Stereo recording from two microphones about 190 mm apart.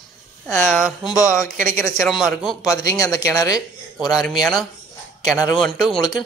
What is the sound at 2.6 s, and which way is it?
Speech, 20° left (ahead or behind).